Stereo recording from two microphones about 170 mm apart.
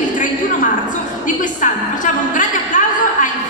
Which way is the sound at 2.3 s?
50° left (ahead or behind).